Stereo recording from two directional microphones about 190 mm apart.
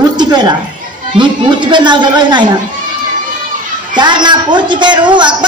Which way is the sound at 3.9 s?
25° right (ahead or behind).